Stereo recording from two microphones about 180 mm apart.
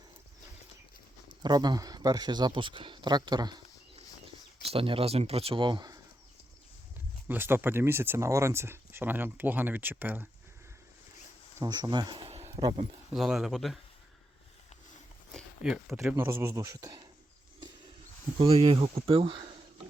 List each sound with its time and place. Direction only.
1.3 s speech: 25° right (ahead or behind)
4.6 s speech: 30° right (ahead or behind)
7.3 s speech: 10° right (ahead or behind)
11.6 s speech: 25° right (ahead or behind)
12.5 s a sound: 25° right (ahead or behind)
13.1 s speech: 5° right (ahead or behind)
15.3 s a sound: centre (ahead or behind)
16.1 s speech: 15° right (ahead or behind)
18.3 s speech: 30° right (ahead or behind)